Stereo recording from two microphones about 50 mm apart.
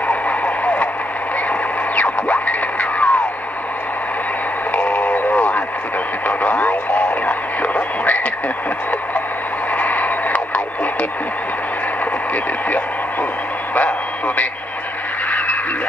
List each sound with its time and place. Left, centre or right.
0.1 s radio: left
2.0 s music: left
4.7 s radio: left
9.8 s radio: left
13.7 s speech: left